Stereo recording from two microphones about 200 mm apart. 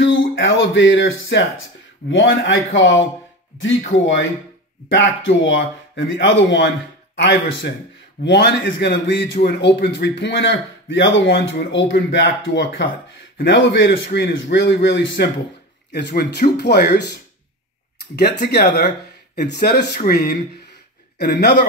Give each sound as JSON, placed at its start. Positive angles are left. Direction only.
{"t": 0.0, "sound": "a sound", "side_deg": 65}
{"t": 2.0, "sound": "a man's voice", "side_deg": 65}
{"t": 18.1, "sound": "a man's voice", "side_deg": 55}